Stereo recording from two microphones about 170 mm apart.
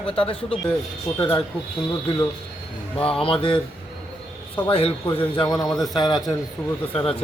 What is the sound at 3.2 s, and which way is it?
Speech, 30° left (ahead or behind).